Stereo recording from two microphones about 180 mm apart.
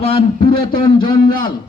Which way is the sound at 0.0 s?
30° left (ahead or behind).